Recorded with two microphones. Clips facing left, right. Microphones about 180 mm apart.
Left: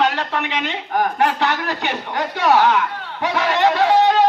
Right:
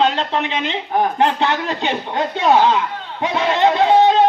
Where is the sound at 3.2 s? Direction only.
25° right (ahead or behind).